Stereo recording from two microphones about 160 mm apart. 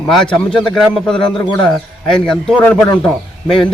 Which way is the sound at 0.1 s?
5° left (ahead or behind).